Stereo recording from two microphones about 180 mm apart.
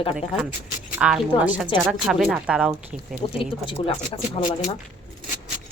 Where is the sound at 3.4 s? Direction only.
30° left (ahead or behind).